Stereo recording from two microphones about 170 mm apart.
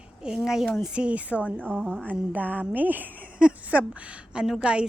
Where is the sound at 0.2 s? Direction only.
5° right (ahead or behind).